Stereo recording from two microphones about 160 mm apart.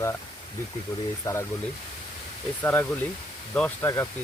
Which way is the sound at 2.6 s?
10° left (ahead or behind).